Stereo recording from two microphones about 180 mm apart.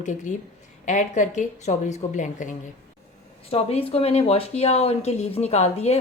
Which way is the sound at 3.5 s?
30° left (ahead or behind).